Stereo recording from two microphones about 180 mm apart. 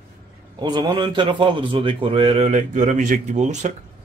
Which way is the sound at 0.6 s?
25° right (ahead or behind).